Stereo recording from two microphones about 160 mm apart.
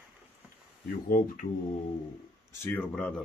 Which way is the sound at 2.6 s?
10° left (ahead or behind).